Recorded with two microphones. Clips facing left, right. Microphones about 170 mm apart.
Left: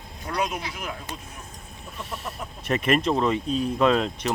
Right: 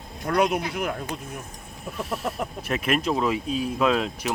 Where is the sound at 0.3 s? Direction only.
60° right (ahead or behind).